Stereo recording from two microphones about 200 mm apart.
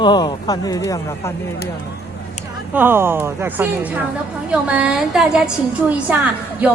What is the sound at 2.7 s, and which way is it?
A woman's voice, 10° right (ahead or behind).